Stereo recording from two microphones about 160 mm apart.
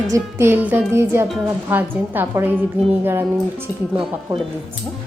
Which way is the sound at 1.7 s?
10° right (ahead or behind).